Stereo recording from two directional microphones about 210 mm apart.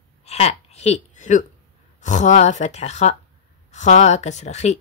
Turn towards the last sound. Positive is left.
turn(degrees=35)  # may be behind; listen again after turning